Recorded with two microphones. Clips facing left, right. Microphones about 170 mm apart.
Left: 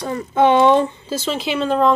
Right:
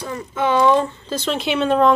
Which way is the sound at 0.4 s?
25° left (ahead or behind).